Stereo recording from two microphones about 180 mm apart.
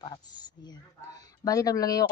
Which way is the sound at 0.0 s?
25° left (ahead or behind).